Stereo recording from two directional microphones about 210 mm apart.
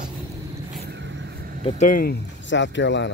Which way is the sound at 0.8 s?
55° right (ahead or behind).